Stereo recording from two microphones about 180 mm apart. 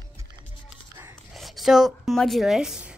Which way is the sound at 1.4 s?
Centre (ahead or behind).